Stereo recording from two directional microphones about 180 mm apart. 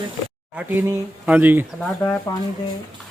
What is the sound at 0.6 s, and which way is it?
A man's voice, 10° right (ahead or behind).